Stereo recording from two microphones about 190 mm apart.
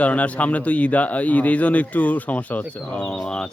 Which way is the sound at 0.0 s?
5° left (ahead or behind).